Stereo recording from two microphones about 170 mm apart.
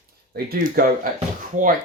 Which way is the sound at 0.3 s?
60° right (ahead or behind).